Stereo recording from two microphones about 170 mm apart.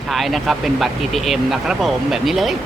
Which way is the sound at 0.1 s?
Centre (ahead or behind).